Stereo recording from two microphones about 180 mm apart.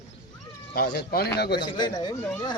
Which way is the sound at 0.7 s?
65° left (ahead or behind).